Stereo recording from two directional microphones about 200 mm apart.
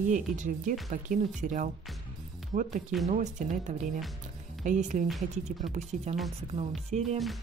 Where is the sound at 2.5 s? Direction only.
40° right (ahead or behind).